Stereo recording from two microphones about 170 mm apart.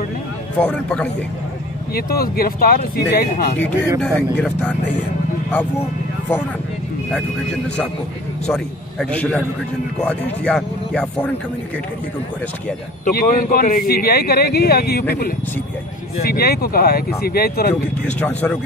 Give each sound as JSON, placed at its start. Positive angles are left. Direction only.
{"t": 0.6, "sound": "speech", "side_deg": 5}
{"t": 2.0, "sound": "speech", "side_deg": 60}
{"t": 4.0, "sound": "speech", "side_deg": 5}
{"t": 8.5, "sound": "speech", "side_deg": 5}
{"t": 13.0, "sound": "speech", "side_deg": 55}
{"t": 18.2, "sound": "speech", "side_deg": 10}